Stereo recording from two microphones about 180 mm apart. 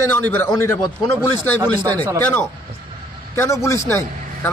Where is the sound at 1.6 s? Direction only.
20° right (ahead or behind).